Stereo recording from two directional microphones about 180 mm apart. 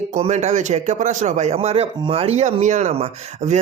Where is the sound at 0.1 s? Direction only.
40° right (ahead or behind).